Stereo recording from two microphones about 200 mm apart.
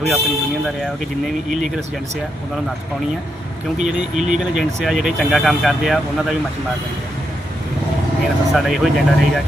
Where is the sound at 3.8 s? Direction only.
5° right (ahead or behind).